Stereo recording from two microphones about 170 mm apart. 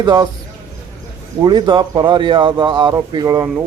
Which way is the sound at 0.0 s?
25° right (ahead or behind).